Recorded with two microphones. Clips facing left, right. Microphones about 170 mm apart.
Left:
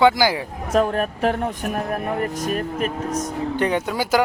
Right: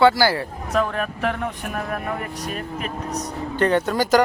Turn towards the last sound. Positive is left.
turn(degrees=10)  # may be behind; listen again after turning